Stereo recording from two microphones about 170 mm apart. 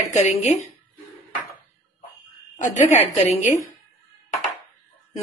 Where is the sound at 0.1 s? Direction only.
40° left (ahead or behind).